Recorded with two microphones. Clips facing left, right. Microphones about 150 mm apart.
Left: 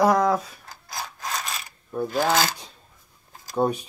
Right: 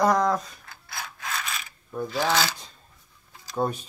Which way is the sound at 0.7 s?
40° left (ahead or behind).